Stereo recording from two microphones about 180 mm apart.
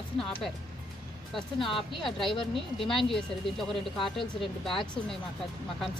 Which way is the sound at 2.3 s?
30° left (ahead or behind).